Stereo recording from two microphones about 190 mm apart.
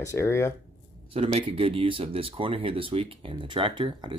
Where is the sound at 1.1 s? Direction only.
30° right (ahead or behind).